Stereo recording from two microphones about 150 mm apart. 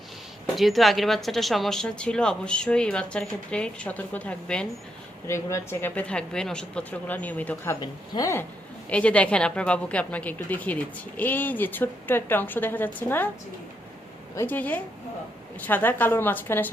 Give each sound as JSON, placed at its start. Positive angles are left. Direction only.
{"t": 0.5, "sound": "a woman's voice", "side_deg": 0}
{"t": 5.2, "sound": "speech", "side_deg": 20}
{"t": 7.8, "sound": "a woman's voice", "side_deg": 25}
{"t": 8.9, "sound": "speech", "side_deg": 10}
{"t": 14.3, "sound": "speech", "side_deg": 10}